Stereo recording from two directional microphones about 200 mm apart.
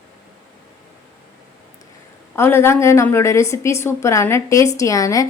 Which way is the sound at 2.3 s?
10° left (ahead or behind).